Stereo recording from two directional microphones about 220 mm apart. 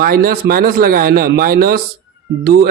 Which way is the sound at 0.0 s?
40° right (ahead or behind).